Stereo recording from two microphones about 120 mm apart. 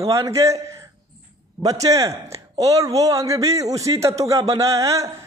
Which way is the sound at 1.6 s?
30° right (ahead or behind).